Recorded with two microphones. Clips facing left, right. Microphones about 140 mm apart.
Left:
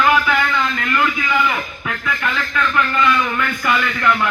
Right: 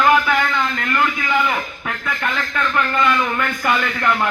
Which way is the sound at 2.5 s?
45° right (ahead or behind).